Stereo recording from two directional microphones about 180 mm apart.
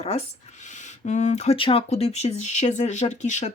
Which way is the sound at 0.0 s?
40° left (ahead or behind).